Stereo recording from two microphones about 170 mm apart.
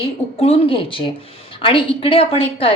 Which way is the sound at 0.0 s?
35° left (ahead or behind).